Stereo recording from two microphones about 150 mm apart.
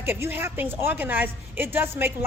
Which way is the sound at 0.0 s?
15° right (ahead or behind).